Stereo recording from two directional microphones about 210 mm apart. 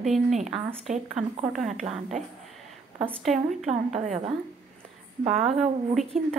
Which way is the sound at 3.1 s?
Centre (ahead or behind).